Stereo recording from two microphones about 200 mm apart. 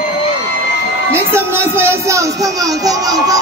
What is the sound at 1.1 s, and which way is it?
Music, 10° right (ahead or behind).